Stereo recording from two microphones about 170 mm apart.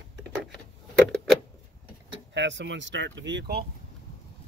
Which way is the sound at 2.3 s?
90° right.